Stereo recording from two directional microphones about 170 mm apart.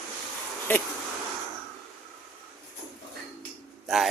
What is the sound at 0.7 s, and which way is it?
Speech, 10° left (ahead or behind).